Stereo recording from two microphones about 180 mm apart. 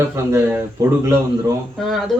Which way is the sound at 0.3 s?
15° right (ahead or behind).